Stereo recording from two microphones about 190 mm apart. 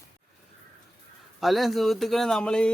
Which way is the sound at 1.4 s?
Centre (ahead or behind).